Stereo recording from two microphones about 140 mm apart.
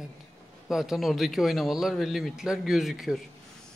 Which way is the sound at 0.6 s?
5° right (ahead or behind).